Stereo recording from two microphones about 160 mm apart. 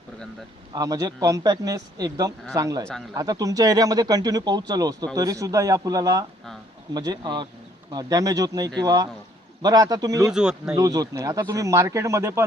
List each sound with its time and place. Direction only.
0.7 s speech: 25° right (ahead or behind)
10.3 s speech: 5° right (ahead or behind)
10.8 s speech: 20° right (ahead or behind)